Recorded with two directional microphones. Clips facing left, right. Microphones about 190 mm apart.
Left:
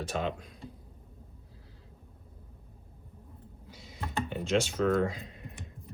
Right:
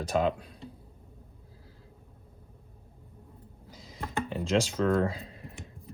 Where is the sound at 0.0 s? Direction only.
35° right (ahead or behind).